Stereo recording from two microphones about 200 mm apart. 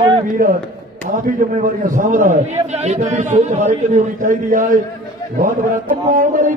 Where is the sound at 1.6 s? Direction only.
40° right (ahead or behind).